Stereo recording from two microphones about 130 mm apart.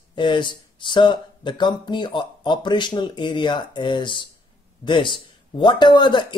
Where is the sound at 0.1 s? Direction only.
35° left (ahead or behind).